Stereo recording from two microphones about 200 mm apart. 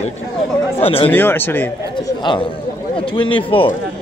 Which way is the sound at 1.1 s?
10° left (ahead or behind).